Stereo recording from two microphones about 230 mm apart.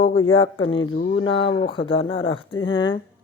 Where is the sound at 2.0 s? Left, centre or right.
Left.